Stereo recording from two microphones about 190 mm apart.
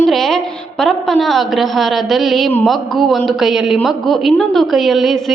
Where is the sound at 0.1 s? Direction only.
Centre (ahead or behind).